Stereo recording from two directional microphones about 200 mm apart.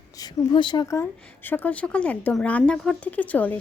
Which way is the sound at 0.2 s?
20° left (ahead or behind).